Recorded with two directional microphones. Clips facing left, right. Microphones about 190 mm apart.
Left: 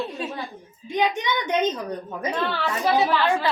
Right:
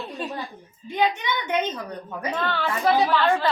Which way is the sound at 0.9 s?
15° left (ahead or behind).